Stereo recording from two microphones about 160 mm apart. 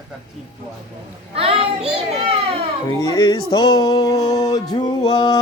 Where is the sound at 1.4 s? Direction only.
40° right (ahead or behind).